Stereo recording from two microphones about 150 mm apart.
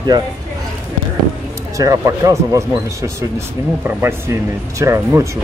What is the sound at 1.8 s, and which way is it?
Speech, 20° right (ahead or behind).